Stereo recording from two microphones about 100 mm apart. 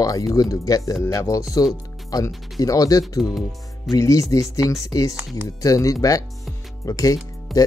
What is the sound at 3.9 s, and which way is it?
Speech, 35° left (ahead or behind).